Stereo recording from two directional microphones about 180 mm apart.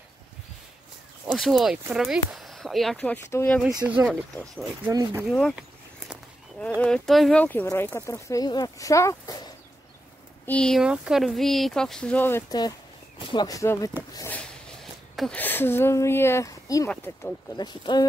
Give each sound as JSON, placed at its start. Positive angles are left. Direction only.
{"t": 1.2, "sound": "speech", "side_deg": 0}
{"t": 3.6, "sound": "speech", "side_deg": -5}
{"t": 4.1, "sound": "speech", "side_deg": 5}
{"t": 4.8, "sound": "speech", "side_deg": -20}
{"t": 6.8, "sound": "speech", "side_deg": 5}
{"t": 10.4, "sound": "speech", "side_deg": 5}
{"t": 17.6, "sound": "speech", "side_deg": 25}